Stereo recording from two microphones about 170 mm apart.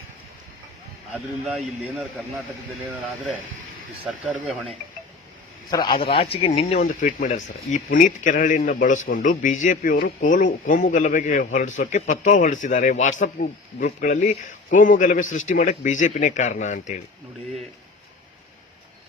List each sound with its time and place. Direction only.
1.5 s speech: centre (ahead or behind)
4.0 s speech: 5° right (ahead or behind)
5.7 s speech: 25° left (ahead or behind); by 17.0 s 45° left (ahead or behind)